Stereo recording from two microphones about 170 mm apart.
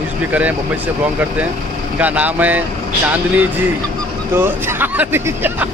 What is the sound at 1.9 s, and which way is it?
Speech, 10° right (ahead or behind).